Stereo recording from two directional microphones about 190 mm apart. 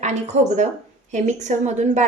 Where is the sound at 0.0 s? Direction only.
35° right (ahead or behind).